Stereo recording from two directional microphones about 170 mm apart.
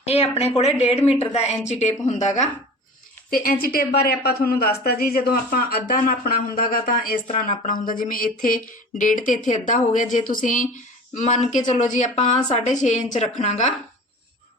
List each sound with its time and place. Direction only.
0.0 s a woman's voice: 35° left (ahead or behind)
3.2 s speech: 55° left (ahead or behind)